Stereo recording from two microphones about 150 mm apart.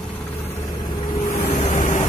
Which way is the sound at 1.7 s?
60° left (ahead or behind).